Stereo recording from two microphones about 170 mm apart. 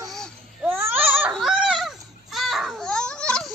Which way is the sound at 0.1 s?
Centre (ahead or behind).